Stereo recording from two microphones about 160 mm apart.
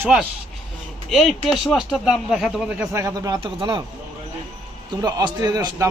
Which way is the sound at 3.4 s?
35° right (ahead or behind).